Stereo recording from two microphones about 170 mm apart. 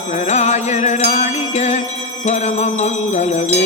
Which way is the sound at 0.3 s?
40° left (ahead or behind).